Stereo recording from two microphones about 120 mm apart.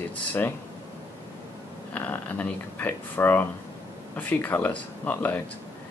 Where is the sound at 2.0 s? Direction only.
15° left (ahead or behind).